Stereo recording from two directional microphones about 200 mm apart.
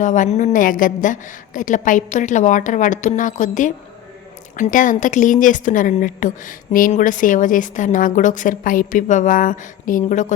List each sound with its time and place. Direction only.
0.0 s a woman's voice: 40° left (ahead or behind)